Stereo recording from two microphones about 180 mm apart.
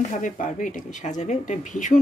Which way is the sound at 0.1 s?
45° left (ahead or behind).